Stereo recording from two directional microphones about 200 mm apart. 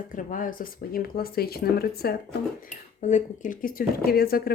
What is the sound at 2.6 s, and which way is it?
A woman's voice, 35° left (ahead or behind).